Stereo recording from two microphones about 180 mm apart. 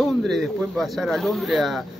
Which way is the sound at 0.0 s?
Centre (ahead or behind).